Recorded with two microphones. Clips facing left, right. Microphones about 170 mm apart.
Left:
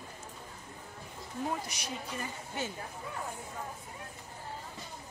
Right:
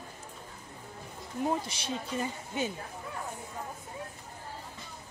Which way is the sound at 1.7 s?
30° right (ahead or behind).